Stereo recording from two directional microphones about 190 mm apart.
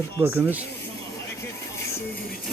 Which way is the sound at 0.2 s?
10° right (ahead or behind).